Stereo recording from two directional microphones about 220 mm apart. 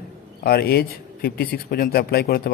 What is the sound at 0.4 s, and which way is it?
A man's voice, 45° left (ahead or behind).